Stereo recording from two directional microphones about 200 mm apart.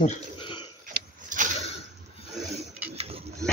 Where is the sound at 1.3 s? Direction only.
40° right (ahead or behind).